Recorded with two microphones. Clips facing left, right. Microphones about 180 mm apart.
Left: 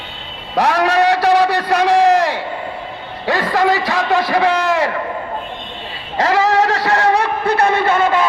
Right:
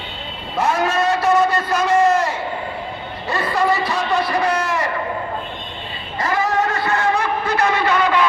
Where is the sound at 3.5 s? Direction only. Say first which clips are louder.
Left 2 dB; 90° left.